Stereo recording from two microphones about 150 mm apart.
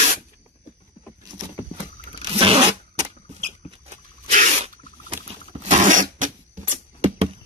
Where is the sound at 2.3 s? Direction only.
40° right (ahead or behind).